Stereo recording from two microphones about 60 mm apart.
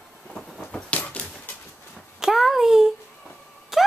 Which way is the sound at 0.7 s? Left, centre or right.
Left.